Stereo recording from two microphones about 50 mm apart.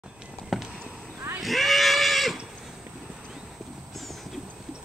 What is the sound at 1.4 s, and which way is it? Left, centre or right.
Pig, centre.